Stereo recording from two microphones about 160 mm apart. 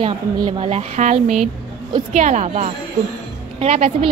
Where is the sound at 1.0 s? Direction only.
50° right (ahead or behind).